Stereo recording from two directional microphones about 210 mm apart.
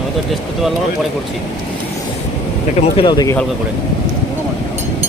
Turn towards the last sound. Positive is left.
turn(degrees=20)  # may be behind; listen again after turning